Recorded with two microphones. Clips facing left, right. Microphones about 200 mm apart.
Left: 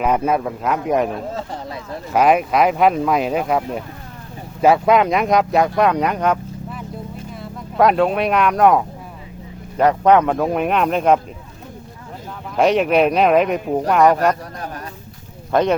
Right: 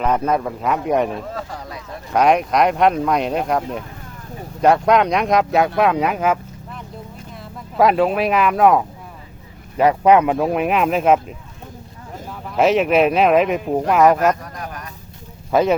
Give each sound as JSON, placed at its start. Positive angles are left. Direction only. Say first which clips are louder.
{"t": 0.0, "sound": "speech", "louder": "left 1 dB", "side_deg": 10}
{"t": 1.3, "sound": "a sound", "louder": "left 2 dB", "side_deg": 25}
{"t": 2.1, "sound": "speech", "louder": "even", "side_deg": 5}
{"t": 12.5, "sound": "speech", "louder": "even", "side_deg": 0}
{"t": 15.5, "sound": "speech", "louder": "right 1 dB", "side_deg": -5}